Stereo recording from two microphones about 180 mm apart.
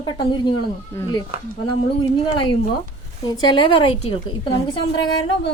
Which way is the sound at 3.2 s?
25° left (ahead or behind).